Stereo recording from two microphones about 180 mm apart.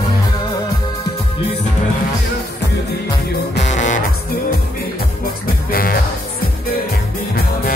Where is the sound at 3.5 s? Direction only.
40° left (ahead or behind).